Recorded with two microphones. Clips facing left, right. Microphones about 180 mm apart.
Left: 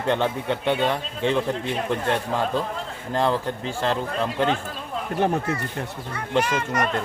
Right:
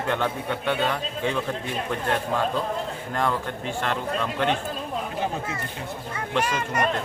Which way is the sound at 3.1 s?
30° left (ahead or behind).